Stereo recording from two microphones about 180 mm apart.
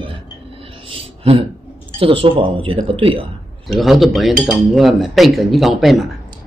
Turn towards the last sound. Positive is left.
turn(degrees=0)  # may be behind; listen again after turning